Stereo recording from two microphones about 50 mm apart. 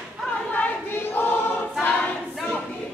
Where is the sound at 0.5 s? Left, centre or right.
Left.